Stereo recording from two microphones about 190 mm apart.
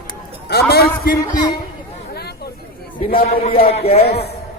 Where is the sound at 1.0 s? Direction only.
50° left (ahead or behind).